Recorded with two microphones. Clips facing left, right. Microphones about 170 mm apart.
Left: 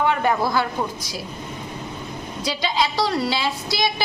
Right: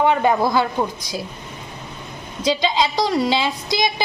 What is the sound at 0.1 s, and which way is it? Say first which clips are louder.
Speech: right 3 dB; 20° right (ahead or behind).